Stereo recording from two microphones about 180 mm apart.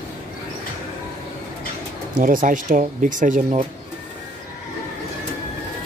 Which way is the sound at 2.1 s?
50° right (ahead or behind).